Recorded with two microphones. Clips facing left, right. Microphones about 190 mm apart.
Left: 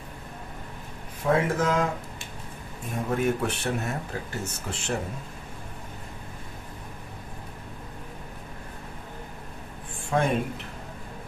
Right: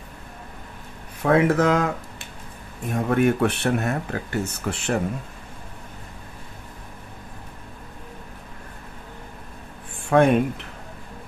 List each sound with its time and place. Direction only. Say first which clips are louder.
1.2 s speech: right 6 dB; 70° right (ahead or behind)
3.1 s speech: right 6 dB; 70° right (ahead or behind)
10.0 s speech: right 8 dB; 65° right (ahead or behind)